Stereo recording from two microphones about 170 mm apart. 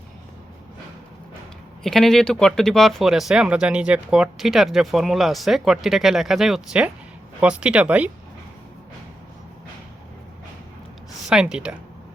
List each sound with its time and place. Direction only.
1.8 s speech: centre (ahead or behind)
11.3 s speech: 5° right (ahead or behind)